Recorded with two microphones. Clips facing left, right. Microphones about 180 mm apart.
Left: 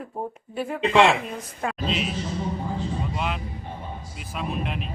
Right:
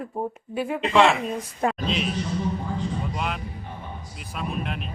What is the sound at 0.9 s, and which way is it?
Speech, 20° left (ahead or behind).